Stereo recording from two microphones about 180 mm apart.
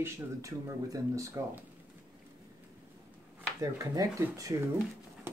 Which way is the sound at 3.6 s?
15° right (ahead or behind).